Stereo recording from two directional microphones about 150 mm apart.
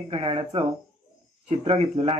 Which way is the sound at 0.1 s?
40° right (ahead or behind).